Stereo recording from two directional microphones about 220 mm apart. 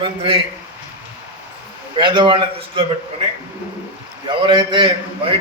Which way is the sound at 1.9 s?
20° right (ahead or behind).